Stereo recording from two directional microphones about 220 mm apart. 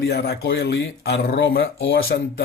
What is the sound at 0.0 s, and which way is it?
Speech, 45° left (ahead or behind).